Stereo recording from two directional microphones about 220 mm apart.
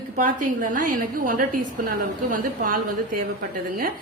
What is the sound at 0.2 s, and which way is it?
A woman's voice, 35° right (ahead or behind).